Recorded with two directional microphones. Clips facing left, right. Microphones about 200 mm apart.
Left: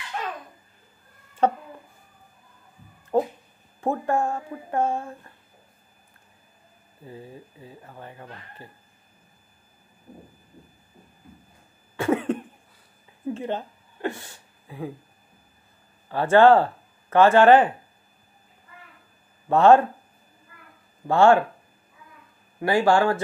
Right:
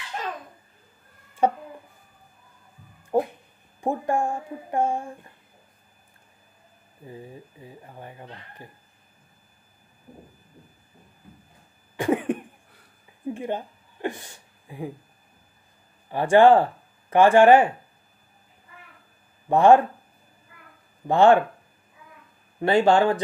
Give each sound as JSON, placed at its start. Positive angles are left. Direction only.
{"t": 1.4, "sound": "a sound", "side_deg": -10}
{"t": 3.1, "sound": "dog", "side_deg": -10}
{"t": 3.8, "sound": "speech", "side_deg": -15}
{"t": 7.1, "sound": "speech", "side_deg": -15}
{"t": 12.0, "sound": "cough", "side_deg": -15}
{"t": 13.3, "sound": "a sound", "side_deg": -15}
{"t": 16.1, "sound": "speech", "side_deg": -15}
{"t": 19.5, "sound": "speech", "side_deg": -15}
{"t": 21.1, "sound": "speech", "side_deg": -20}
{"t": 22.6, "sound": "speech", "side_deg": -25}